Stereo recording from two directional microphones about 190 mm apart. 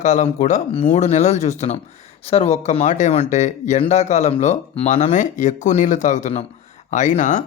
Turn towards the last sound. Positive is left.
turn(degrees=40)  # may be behind; listen again after turning